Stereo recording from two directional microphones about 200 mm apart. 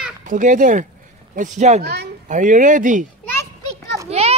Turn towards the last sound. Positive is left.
turn(degrees=-30)  # may be behind; listen again after turning